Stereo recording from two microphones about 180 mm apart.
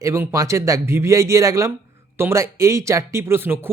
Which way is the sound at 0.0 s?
15° right (ahead or behind).